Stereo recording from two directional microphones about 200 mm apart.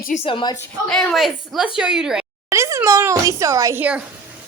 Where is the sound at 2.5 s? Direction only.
15° right (ahead or behind).